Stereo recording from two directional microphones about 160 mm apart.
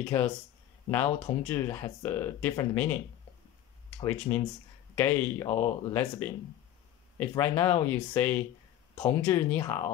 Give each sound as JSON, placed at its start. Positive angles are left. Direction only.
{"t": 0.1, "sound": "speech", "side_deg": 10}
{"t": 4.0, "sound": "speech", "side_deg": 10}